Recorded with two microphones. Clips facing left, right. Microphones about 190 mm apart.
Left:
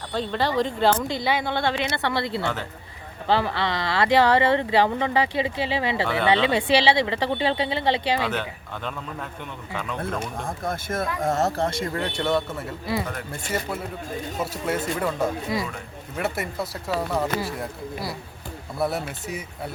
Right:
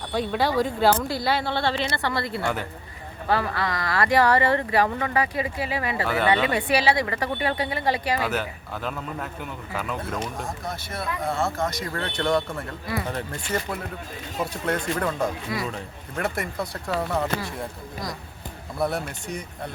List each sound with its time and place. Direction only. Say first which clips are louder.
0.1 s speech: right 1 dB; 10° right (ahead or behind)
1.2 s speech: even; 15° left (ahead or behind)
2.4 s speech: right 1 dB; 10° right (ahead or behind)
3.2 s speech: left 2 dB; 25° left (ahead or behind)
8.2 s a man's voice: even; 5° right (ahead or behind)
10.4 s speech: left 3 dB; 50° left (ahead or behind); by 12.0 s 25° left (ahead or behind)
12.0 s a man's voice: right 2 dB; 5° left (ahead or behind)
14.3 s a man's voice: right 1 dB; 5° left (ahead or behind)
15.5 s speech: left 2 dB; 20° left (ahead or behind)
16.1 s a man's voice: even; 5° left (ahead or behind)